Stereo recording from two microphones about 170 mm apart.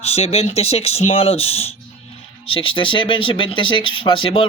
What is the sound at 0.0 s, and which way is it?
Speech, 40° left (ahead or behind).